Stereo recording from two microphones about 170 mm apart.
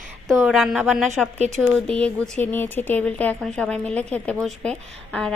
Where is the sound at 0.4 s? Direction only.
Centre (ahead or behind).